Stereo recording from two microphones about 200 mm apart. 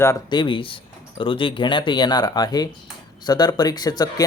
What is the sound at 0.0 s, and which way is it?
Speech, 20° left (ahead or behind).